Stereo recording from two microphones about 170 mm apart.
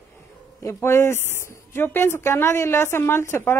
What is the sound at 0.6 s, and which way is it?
A woman's voice, 15° left (ahead or behind).